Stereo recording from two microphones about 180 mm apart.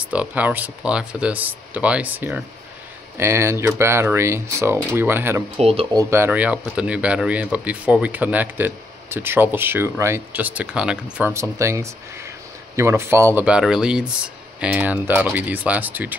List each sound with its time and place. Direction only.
0.1 s speech: 10° right (ahead or behind)
5.6 s speech: 35° right (ahead or behind)
5.9 s speech: 15° right (ahead or behind)